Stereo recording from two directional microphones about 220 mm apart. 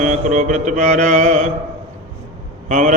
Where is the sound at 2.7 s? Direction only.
35° right (ahead or behind).